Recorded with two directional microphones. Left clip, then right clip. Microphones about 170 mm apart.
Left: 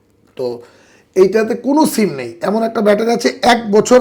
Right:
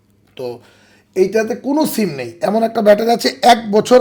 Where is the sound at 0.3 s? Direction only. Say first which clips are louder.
Left 5 dB; 10° right (ahead or behind).